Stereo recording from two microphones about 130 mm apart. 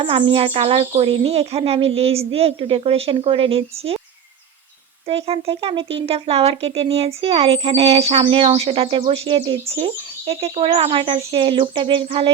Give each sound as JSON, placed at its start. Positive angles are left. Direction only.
{"t": 0.0, "sound": "speech", "side_deg": -40}
{"t": 5.0, "sound": "speech", "side_deg": -50}